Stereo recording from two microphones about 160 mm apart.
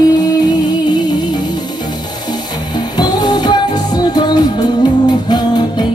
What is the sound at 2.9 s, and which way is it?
Music, 25° left (ahead or behind).